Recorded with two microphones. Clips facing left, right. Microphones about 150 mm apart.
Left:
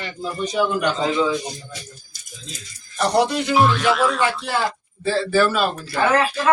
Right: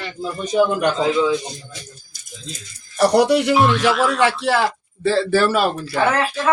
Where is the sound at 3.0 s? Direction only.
65° right (ahead or behind).